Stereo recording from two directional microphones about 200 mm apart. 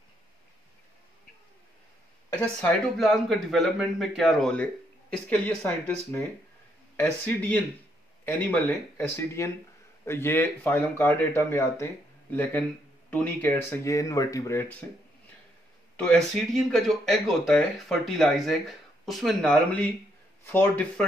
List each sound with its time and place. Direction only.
2.6 s speech: centre (ahead or behind)
7.0 s speech: 10° left (ahead or behind)
16.0 s speech: 5° left (ahead or behind)